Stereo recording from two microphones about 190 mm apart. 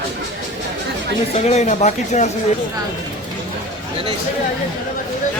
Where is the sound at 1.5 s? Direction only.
35° left (ahead or behind).